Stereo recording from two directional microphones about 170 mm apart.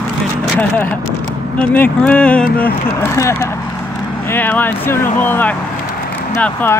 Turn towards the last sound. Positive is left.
turn(degrees=10)  # may be behind; listen again after turning